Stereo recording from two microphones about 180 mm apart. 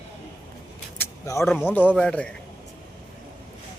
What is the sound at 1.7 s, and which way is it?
Speech, 10° left (ahead or behind).